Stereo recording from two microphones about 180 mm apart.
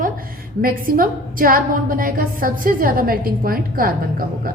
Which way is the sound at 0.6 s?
50° right (ahead or behind).